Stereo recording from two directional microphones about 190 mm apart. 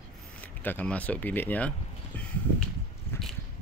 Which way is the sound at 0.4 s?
10° left (ahead or behind).